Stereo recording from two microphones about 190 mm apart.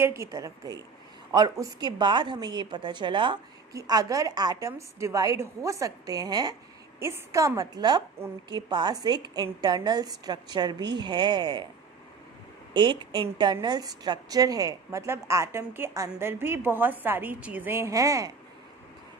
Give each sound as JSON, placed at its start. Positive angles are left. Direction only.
{"t": 0.0, "sound": "a woman's voice", "side_deg": -15}
{"t": 12.7, "sound": "a woman's voice", "side_deg": -25}